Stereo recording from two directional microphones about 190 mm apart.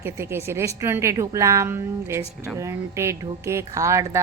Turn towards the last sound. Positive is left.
turn(degrees=-15)  # may be behind; listen again after turning